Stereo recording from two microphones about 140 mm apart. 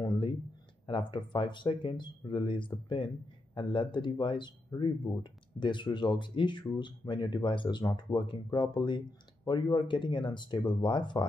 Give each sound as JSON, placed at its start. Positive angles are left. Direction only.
{"t": 0.8, "sound": "speech", "side_deg": 35}